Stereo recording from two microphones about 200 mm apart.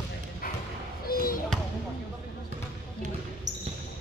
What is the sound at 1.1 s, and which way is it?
Basketball bounce, 45° left (ahead or behind).